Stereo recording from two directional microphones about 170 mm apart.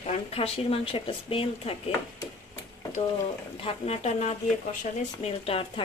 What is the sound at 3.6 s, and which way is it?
Speech, 40° left (ahead or behind).